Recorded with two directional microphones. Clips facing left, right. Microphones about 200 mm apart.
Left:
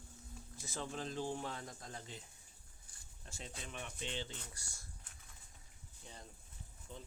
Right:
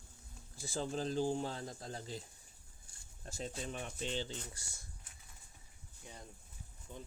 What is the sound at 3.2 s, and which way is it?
Speech, 40° right (ahead or behind).